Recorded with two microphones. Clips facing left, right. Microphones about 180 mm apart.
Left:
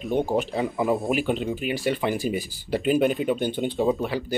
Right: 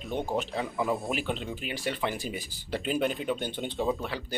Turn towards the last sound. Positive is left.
turn(degrees=10)  # may be behind; listen again after turning